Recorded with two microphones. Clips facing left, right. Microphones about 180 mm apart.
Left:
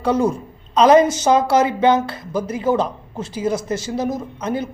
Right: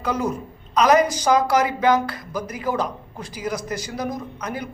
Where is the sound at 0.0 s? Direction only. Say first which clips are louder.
Left 6 dB; 30° left (ahead or behind).